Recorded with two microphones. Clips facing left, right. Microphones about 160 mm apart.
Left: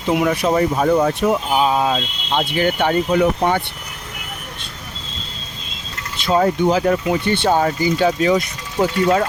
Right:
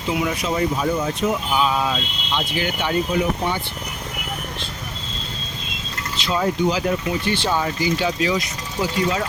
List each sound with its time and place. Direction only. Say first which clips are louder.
0.1 s speech: left 6 dB; 55° left (ahead or behind)
1.5 s speech: left 4 dB; 35° left (ahead or behind)
2.7 s speech: left 3 dB; 60° left (ahead or behind)
6.1 s speech: left 5 dB; 50° left (ahead or behind)